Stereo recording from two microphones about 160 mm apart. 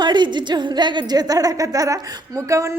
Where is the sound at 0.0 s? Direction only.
30° right (ahead or behind).